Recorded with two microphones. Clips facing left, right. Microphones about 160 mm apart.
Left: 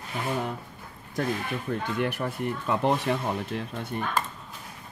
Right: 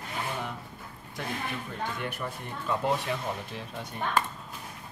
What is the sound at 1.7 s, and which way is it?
Speech, 55° left (ahead or behind).